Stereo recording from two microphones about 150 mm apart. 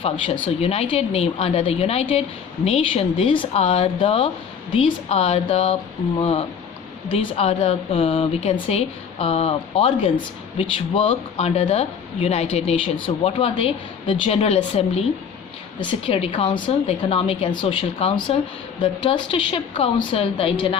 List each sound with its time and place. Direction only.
0.6 s speech: 40° left (ahead or behind)